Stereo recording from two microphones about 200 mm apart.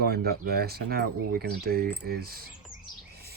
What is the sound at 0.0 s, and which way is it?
Speech, 50° right (ahead or behind).